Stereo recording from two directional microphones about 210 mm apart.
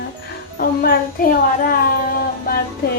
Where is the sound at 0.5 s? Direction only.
45° left (ahead or behind).